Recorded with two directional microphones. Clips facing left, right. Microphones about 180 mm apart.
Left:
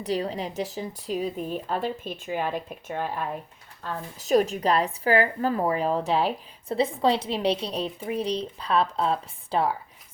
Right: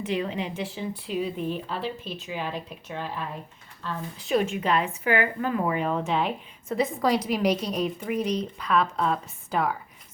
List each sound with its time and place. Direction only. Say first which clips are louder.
0.0 s a woman's voice: left 1 dB; 35° left (ahead or behind)